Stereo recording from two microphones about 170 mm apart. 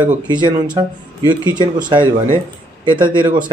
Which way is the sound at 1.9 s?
25° right (ahead or behind).